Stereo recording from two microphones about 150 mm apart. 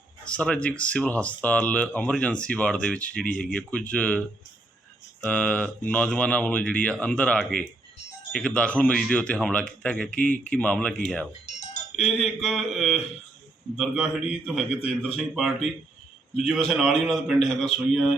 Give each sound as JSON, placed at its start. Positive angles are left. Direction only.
{"t": 0.3, "sound": "speech", "side_deg": 10}
{"t": 5.2, "sound": "speech", "side_deg": 10}
{"t": 10.2, "sound": "speech", "side_deg": 60}
{"t": 10.4, "sound": "speech", "side_deg": 10}
{"t": 11.3, "sound": "music", "side_deg": 50}
{"t": 12.2, "sound": "a man's voice", "side_deg": 0}